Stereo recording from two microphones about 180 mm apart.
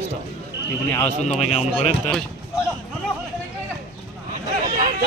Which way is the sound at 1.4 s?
35° left (ahead or behind).